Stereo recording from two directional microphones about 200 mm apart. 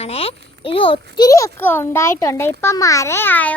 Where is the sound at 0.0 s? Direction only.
30° left (ahead or behind).